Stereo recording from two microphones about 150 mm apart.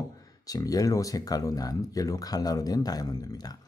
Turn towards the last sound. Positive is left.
turn(degrees=25)  # may be behind; listen again after turning